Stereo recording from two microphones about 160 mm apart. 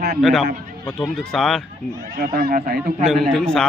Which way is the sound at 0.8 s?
5° left (ahead or behind).